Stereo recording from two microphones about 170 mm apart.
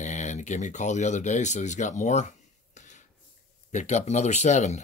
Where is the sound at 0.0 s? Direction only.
45° left (ahead or behind).